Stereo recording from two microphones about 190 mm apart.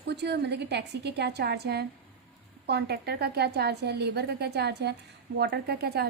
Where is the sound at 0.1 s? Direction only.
60° right (ahead or behind).